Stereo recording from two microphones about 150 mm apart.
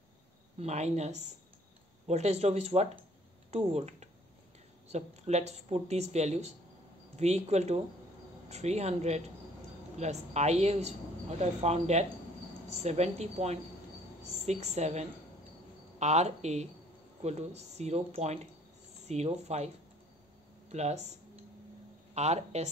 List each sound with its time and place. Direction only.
0.6 s speech: 45° right (ahead or behind)
20.7 s speech: 45° right (ahead or behind)
22.1 s speech: 45° right (ahead or behind)